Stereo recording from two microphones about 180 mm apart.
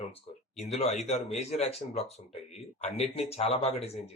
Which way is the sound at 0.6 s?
35° left (ahead or behind).